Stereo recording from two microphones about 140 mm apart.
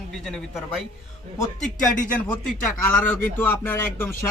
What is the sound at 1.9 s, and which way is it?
Speech, 70° left (ahead or behind).